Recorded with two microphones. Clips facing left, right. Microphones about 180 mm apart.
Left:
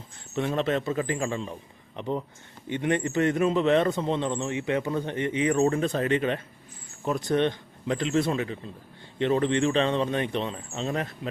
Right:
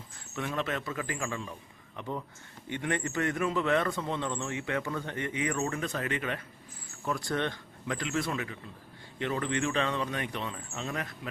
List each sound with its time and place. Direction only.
0.3 s a man's voice: 30° left (ahead or behind)